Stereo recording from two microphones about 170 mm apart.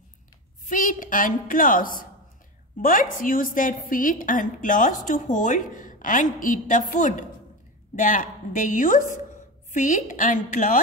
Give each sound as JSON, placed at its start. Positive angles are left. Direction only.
{"t": 0.7, "sound": "a woman's voice", "side_deg": 50}